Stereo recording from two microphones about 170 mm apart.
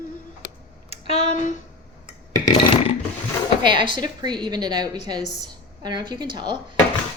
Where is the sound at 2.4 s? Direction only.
30° left (ahead or behind).